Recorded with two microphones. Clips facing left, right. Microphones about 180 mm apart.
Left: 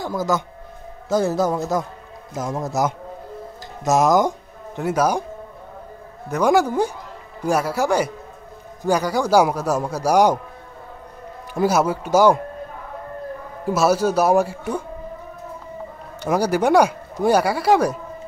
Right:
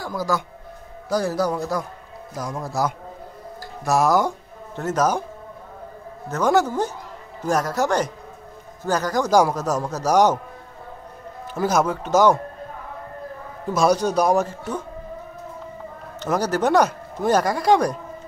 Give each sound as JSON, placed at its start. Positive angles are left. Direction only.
{"t": 0.0, "sound": "a man's voice", "side_deg": 20}
{"t": 6.3, "sound": "speech", "side_deg": 10}
{"t": 11.6, "sound": "speech", "side_deg": 10}
{"t": 13.7, "sound": "speech", "side_deg": 5}
{"t": 16.2, "sound": "speech", "side_deg": 10}